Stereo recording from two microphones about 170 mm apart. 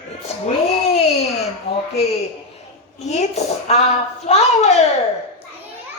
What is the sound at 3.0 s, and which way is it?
A woman's voice, 40° left (ahead or behind).